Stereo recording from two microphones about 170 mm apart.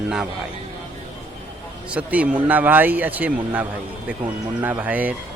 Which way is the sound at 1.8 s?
5° right (ahead or behind).